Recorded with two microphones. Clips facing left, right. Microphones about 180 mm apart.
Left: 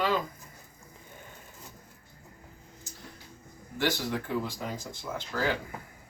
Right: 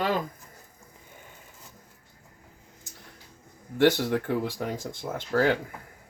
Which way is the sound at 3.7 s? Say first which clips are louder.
Right 8 dB; 55° right (ahead or behind).